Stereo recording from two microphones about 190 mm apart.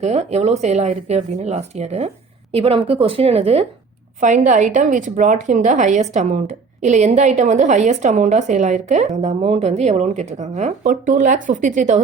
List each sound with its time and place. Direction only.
0.0 s a woman's voice: 35° right (ahead or behind)